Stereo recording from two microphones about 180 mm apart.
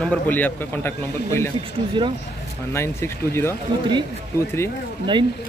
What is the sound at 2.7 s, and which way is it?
Speech, 15° left (ahead or behind).